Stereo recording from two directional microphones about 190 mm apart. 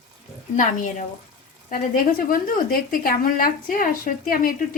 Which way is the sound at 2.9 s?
50° left (ahead or behind).